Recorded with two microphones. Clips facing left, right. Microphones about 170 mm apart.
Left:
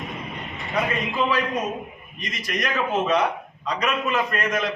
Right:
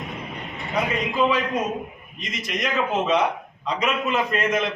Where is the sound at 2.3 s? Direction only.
20° right (ahead or behind).